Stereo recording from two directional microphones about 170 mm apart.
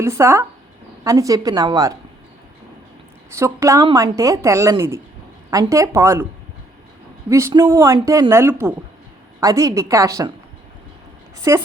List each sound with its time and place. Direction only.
0.0 s speech: 15° right (ahead or behind)
3.3 s speech: 15° right (ahead or behind)
7.3 s speech: 15° right (ahead or behind)
11.5 s speech: 20° right (ahead or behind)